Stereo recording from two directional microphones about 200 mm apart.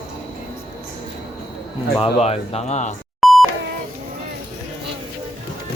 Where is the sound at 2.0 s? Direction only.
30° left (ahead or behind).